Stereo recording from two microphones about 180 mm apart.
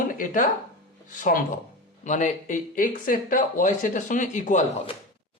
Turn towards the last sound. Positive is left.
turn(degrees=45)  # may be behind; listen again after turning